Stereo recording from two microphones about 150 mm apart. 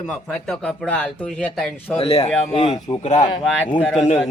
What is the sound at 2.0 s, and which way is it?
Speech, 45° left (ahead or behind).